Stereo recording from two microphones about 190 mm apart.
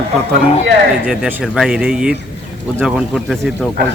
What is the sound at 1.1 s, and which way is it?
Speech, 5° right (ahead or behind).